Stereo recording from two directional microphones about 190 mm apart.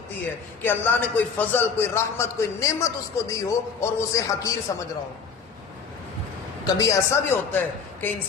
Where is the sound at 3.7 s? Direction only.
15° left (ahead or behind).